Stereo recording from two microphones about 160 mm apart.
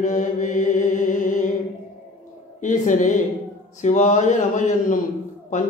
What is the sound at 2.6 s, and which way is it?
Mantra, 50° left (ahead or behind).